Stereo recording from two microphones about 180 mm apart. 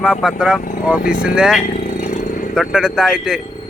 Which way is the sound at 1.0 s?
50° left (ahead or behind).